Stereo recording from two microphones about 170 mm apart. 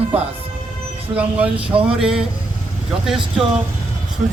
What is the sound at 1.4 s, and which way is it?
Speech, 35° right (ahead or behind).